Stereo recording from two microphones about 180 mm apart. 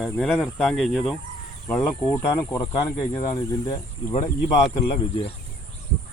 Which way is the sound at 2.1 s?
15° left (ahead or behind).